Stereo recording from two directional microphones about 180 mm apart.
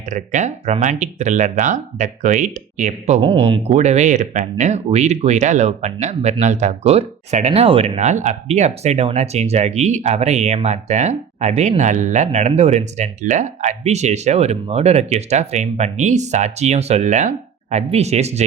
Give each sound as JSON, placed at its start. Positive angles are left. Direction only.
{"t": 0.1, "sound": "speech", "side_deg": -40}
{"t": 3.2, "sound": "speech", "side_deg": -30}